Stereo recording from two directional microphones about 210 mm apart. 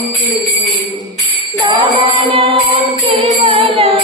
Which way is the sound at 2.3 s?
25° right (ahead or behind).